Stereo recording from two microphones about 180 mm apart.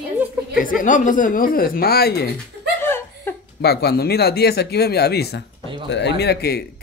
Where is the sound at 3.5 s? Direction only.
65° left (ahead or behind).